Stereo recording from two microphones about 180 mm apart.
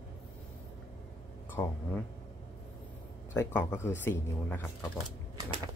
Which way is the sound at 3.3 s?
15° left (ahead or behind).